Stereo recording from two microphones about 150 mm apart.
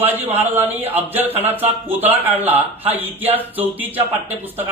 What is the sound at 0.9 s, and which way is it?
A man's voice, 10° right (ahead or behind).